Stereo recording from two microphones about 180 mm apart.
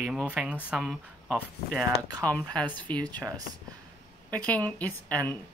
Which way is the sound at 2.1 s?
20° right (ahead or behind).